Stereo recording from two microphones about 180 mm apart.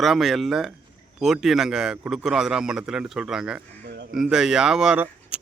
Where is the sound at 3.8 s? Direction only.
70° right (ahead or behind).